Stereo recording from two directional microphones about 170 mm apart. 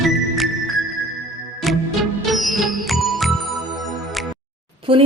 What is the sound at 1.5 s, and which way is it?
Music, centre (ahead or behind).